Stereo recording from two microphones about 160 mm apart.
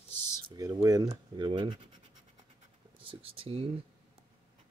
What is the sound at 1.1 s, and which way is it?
Speech, 30° right (ahead or behind).